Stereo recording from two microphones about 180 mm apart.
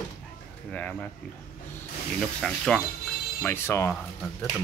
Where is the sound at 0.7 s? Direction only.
5° left (ahead or behind).